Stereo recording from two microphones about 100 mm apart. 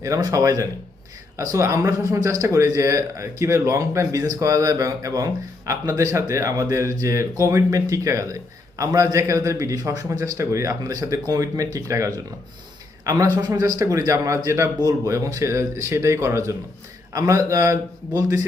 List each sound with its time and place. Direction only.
0.0 s speech: 35° right (ahead or behind)